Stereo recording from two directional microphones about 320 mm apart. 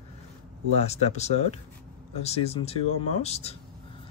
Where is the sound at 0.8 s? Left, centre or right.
Centre.